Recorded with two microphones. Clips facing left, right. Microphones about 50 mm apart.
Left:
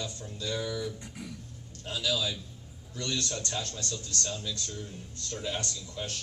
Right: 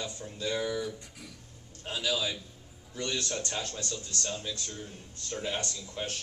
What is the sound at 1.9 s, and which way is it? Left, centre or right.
Speech, right.